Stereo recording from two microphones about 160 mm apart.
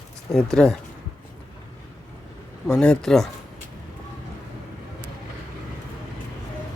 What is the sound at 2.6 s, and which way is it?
Speech, 5° left (ahead or behind).